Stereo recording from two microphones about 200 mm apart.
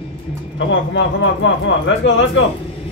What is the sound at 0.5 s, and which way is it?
Speech, 70° left (ahead or behind).